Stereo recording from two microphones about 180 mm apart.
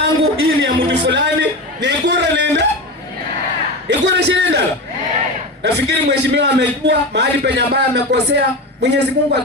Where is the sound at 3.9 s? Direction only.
70° right (ahead or behind).